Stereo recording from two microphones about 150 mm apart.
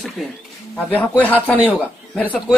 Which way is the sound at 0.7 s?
10° left (ahead or behind).